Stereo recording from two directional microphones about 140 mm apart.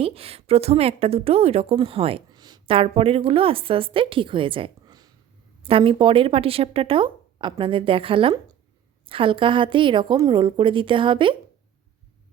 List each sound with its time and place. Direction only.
0.0 s a woman's voice: 45° right (ahead or behind)
2.3 s a sound: 30° right (ahead or behind)
2.7 s speech: 40° right (ahead or behind)